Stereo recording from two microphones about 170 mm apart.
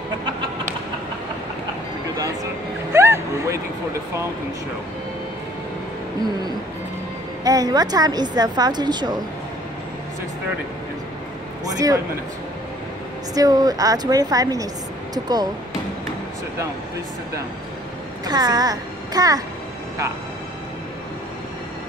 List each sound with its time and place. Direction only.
2.9 s a sound: 15° right (ahead or behind)
7.4 s speech: 20° right (ahead or behind)
11.6 s speech: 20° right (ahead or behind)
13.3 s speech: 20° right (ahead or behind)
18.2 s a child's voice: 25° right (ahead or behind)